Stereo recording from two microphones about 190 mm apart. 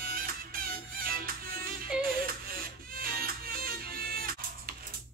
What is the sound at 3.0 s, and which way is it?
Music, 50° right (ahead or behind).